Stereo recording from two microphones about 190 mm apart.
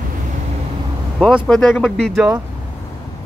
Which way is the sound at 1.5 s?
Centre (ahead or behind).